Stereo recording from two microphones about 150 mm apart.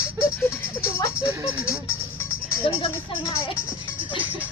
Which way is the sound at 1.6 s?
15° left (ahead or behind).